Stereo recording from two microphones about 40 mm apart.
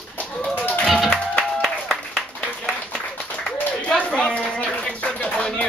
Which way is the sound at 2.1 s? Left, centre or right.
Left.